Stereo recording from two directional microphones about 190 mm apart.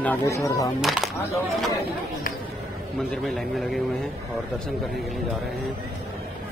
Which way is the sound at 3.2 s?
Centre (ahead or behind).